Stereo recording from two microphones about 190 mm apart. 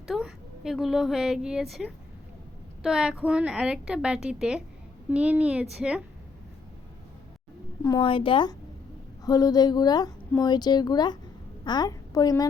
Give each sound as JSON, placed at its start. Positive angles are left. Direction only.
{"t": 0.1, "sound": "a woman's voice", "side_deg": -5}
{"t": 7.9, "sound": "a woman's voice", "side_deg": 25}